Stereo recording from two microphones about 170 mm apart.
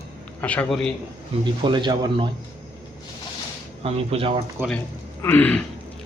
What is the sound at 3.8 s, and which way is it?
Speech, 35° right (ahead or behind).